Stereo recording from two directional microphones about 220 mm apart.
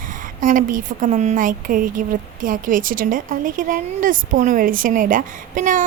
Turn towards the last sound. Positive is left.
turn(degrees=-35)  # may be behind; listen again after turning